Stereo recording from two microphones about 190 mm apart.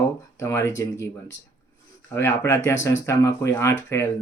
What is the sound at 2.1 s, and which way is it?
Speech, 15° left (ahead or behind).